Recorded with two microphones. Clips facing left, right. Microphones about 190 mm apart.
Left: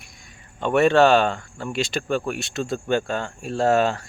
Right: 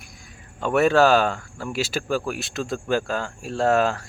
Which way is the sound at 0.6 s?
Centre (ahead or behind).